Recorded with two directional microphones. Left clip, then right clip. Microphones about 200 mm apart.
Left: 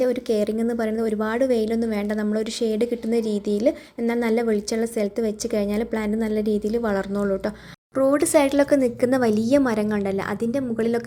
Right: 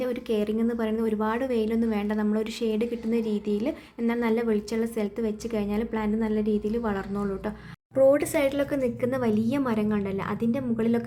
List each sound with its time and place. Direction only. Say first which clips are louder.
0.0 s a woman's voice: left 6 dB; 15° left (ahead or behind)